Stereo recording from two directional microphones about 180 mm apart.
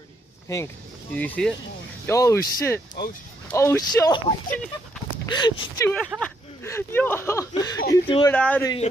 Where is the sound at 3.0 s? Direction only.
65° left (ahead or behind).